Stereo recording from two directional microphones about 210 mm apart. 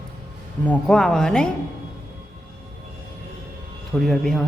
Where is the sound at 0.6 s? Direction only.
5° left (ahead or behind).